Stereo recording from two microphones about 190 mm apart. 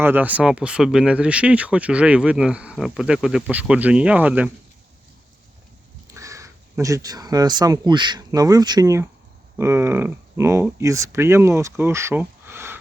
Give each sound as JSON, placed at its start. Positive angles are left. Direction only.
{"t": 0.0, "sound": "speech", "side_deg": -10}
{"t": 6.1, "sound": "speech", "side_deg": -15}